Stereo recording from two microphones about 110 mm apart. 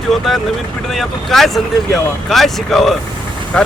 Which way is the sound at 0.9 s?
Centre (ahead or behind).